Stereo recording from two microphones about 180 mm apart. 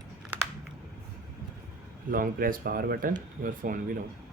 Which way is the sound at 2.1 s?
50° right (ahead or behind).